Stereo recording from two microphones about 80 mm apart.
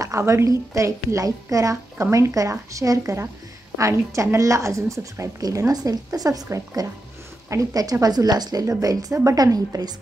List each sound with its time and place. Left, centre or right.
0.0 s a woman's voice: right
8.6 s a woman's voice: right